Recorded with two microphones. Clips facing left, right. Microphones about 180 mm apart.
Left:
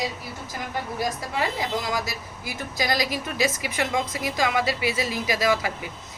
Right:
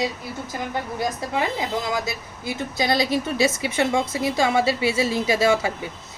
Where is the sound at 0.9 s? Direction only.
25° right (ahead or behind).